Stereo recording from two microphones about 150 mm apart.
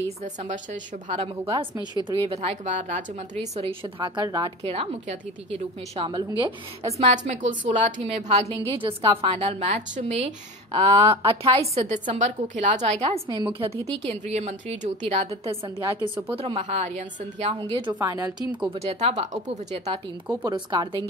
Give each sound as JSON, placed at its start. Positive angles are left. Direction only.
{"t": 0.2, "sound": "a woman's voice", "side_deg": -50}
{"t": 1.8, "sound": "speech", "side_deg": -30}
{"t": 2.2, "sound": "speech", "side_deg": -45}
{"t": 3.3, "sound": "a woman's voice", "side_deg": -40}
{"t": 4.6, "sound": "a woman's voice", "side_deg": -45}
{"t": 11.7, "sound": "a woman's voice", "side_deg": -50}
{"t": 13.0, "sound": "a woman's voice", "side_deg": -30}
{"t": 14.2, "sound": "a woman's voice", "side_deg": -50}
{"t": 15.8, "sound": "speech", "side_deg": -20}
{"t": 16.3, "sound": "a woman's voice", "side_deg": -40}
{"t": 17.6, "sound": "a woman's voice", "side_deg": -35}
{"t": 17.9, "sound": "speech", "side_deg": -20}
{"t": 18.6, "sound": "a woman's voice", "side_deg": -40}
{"t": 20.4, "sound": "a woman's voice", "side_deg": -30}